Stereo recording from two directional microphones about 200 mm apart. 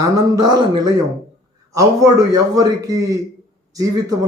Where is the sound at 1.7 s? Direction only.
15° right (ahead or behind).